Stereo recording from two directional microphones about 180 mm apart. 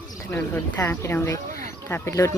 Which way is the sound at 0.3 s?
10° left (ahead or behind).